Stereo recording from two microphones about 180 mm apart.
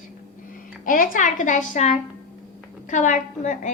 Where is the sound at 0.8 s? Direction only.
50° left (ahead or behind).